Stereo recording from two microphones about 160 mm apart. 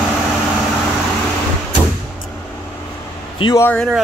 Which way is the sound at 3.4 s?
30° left (ahead or behind).